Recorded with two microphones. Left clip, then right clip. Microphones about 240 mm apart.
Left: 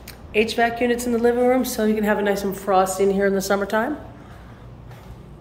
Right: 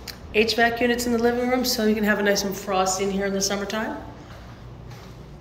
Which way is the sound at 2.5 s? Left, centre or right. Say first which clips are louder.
Left 4 dB; left.